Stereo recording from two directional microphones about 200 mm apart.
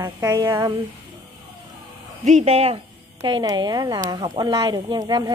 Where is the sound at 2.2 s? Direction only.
35° right (ahead or behind).